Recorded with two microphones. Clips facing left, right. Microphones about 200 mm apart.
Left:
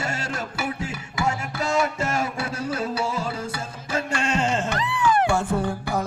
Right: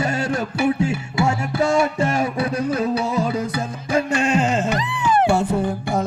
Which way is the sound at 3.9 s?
10° right (ahead or behind).